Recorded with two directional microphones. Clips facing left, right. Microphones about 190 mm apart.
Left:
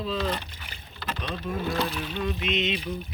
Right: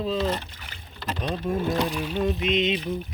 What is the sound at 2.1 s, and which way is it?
Speech, 45° right (ahead or behind).